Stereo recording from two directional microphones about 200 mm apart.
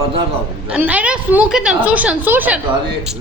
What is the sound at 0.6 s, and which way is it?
A woman's voice, 5° right (ahead or behind).